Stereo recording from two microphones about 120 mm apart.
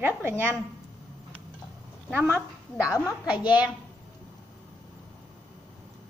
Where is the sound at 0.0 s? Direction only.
20° right (ahead or behind).